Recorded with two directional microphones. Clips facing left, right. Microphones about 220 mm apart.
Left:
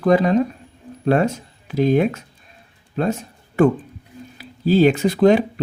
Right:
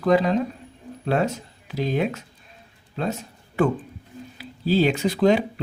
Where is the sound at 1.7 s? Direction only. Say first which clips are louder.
Left 7 dB; 50° left (ahead or behind).